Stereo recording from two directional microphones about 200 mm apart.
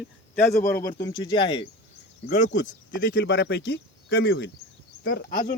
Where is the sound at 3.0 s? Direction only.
65° left (ahead or behind).